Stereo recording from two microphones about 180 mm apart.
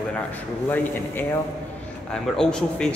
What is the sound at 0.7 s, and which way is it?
A man's voice, 10° left (ahead or behind).